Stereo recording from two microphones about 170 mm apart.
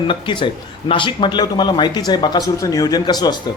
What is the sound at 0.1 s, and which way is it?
Speech, 30° left (ahead or behind).